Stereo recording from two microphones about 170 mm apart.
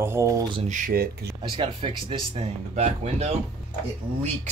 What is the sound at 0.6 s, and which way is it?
Speech, 50° right (ahead or behind).